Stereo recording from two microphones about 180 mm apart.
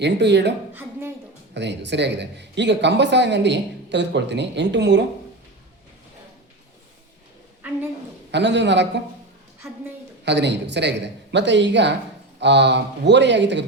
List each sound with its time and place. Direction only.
0.0 s speech: 70° right (ahead or behind)
0.7 s a sound: 10° right (ahead or behind)
1.5 s speech: 75° right (ahead or behind)
8.3 s speech: 75° right (ahead or behind)
10.2 s speech: 75° right (ahead or behind)